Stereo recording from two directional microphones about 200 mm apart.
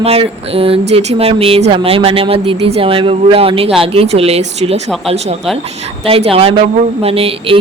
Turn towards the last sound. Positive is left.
turn(degrees=-25)  # may be behind; listen again after turning